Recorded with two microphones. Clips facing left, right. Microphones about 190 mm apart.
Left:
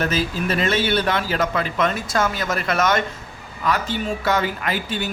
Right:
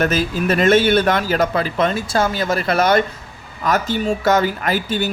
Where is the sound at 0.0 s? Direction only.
50° right (ahead or behind).